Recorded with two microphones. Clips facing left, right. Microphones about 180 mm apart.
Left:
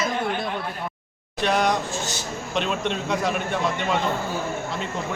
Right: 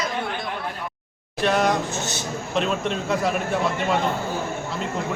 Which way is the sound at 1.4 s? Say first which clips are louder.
Right 1 dB; centre (ahead or behind).